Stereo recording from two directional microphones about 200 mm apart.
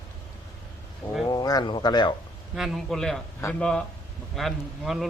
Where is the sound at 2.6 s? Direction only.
Centre (ahead or behind).